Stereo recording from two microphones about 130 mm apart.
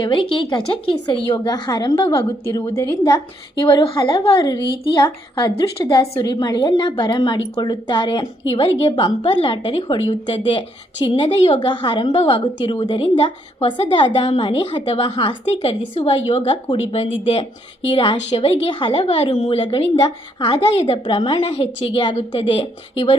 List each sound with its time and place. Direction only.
0.0 s a woman's voice: 40° left (ahead or behind)
11.6 s a woman's voice: 35° left (ahead or behind)
12.1 s a woman's voice: 50° left (ahead or behind)
14.8 s a woman's voice: 50° left (ahead or behind)